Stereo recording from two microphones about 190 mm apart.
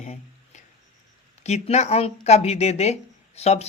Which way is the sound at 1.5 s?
35° left (ahead or behind).